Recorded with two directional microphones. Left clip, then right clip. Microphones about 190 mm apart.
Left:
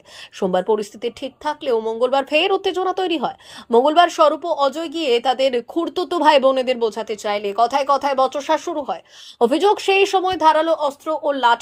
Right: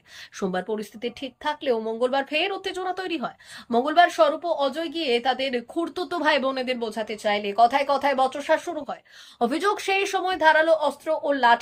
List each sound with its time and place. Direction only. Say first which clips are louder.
0.3 s speech: left 9 dB; 20° left (ahead or behind)
9.4 s speech: left 8 dB; 15° left (ahead or behind); by 11.6 s 30° left (ahead or behind)